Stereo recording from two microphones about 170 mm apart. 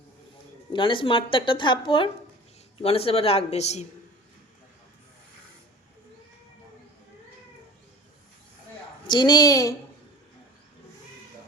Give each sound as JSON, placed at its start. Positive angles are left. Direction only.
{"t": 0.7, "sound": "a woman's voice", "side_deg": 30}
{"t": 9.0, "sound": "speech", "side_deg": 25}